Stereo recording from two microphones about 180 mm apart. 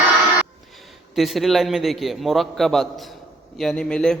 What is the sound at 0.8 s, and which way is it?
A man's voice, centre (ahead or behind).